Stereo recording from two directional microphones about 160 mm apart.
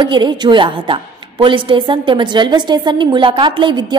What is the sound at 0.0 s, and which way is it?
A woman's voice, 30° right (ahead or behind).